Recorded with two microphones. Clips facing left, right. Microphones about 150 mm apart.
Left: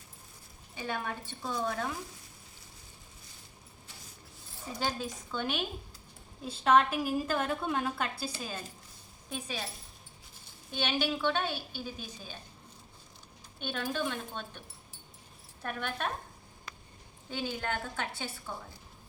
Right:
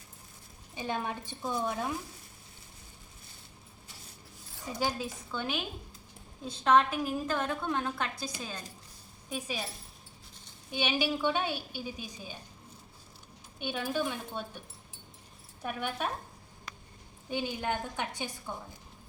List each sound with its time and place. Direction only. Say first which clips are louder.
0.8 s a woman's voice: right 2 dB; 20° right (ahead or behind)
4.8 s a woman's voice: right 2 dB; 10° right (ahead or behind)
9.3 s a woman's voice: right 2 dB; 10° right (ahead or behind)
10.7 s a woman's voice: right 1 dB; 10° right (ahead or behind)
13.6 s a woman's voice: right 2 dB; 10° right (ahead or behind)
15.6 s a woman's voice: right 1 dB; 10° right (ahead or behind)
17.3 s a woman's voice: right 2 dB; 15° right (ahead or behind)